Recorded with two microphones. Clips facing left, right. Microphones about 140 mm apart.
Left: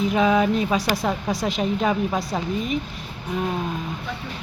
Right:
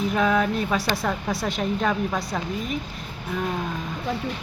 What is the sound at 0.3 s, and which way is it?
Speech, 15° left (ahead or behind).